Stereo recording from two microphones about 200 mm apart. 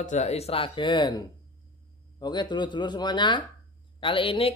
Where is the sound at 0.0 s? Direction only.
35° left (ahead or behind).